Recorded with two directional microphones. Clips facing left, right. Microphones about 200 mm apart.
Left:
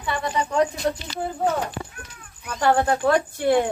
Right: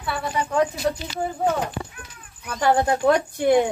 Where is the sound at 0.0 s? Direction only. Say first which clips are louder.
Left 1 dB; 5° right (ahead or behind).